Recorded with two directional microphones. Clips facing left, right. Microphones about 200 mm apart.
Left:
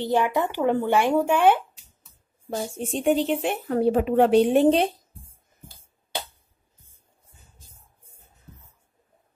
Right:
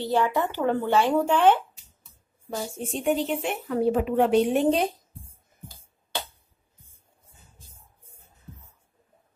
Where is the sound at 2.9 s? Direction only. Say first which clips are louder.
Left 3 dB; 30° left (ahead or behind).